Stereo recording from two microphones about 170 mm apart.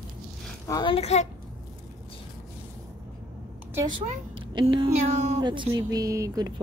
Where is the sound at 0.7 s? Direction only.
25° left (ahead or behind).